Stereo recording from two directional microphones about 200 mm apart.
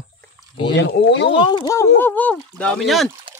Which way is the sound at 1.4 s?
20° left (ahead or behind).